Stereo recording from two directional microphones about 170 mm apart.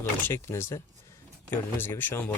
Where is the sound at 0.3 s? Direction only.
15° left (ahead or behind).